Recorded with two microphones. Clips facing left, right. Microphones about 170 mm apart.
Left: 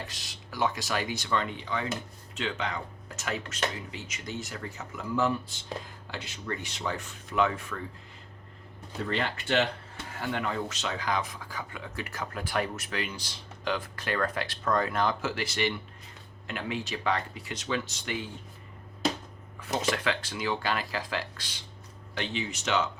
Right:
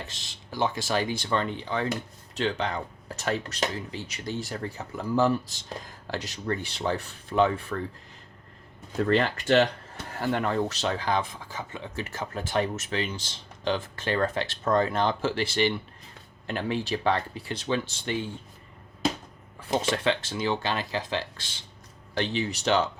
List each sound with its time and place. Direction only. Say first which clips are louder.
0.0 s speech: even; 25° right (ahead or behind)
9.0 s speech: right 7 dB; 45° right (ahead or behind); by 18.2 s 30° right (ahead or behind)
19.5 s speech: right 3 dB; 30° right (ahead or behind)
22.2 s speech: right 5 dB; 35° right (ahead or behind)